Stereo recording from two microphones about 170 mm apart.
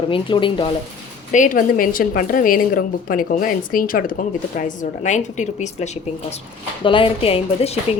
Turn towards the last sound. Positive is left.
turn(degrees=35)  # may be behind; listen again after turning